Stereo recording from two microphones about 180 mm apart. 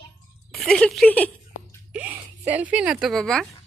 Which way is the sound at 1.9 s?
10° right (ahead or behind).